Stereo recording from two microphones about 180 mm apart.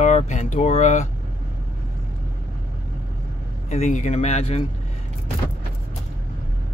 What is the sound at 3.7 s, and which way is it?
Speech, 40° left (ahead or behind).